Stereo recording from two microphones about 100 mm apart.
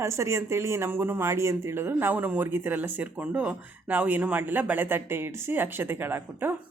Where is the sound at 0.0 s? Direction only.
30° right (ahead or behind).